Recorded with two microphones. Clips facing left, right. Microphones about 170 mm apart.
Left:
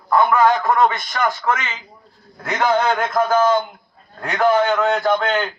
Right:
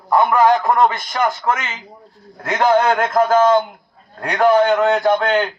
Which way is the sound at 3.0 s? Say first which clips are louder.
Right 3 dB; 30° right (ahead or behind).